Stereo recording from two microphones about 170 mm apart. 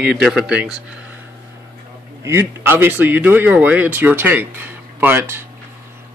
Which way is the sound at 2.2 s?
15° right (ahead or behind).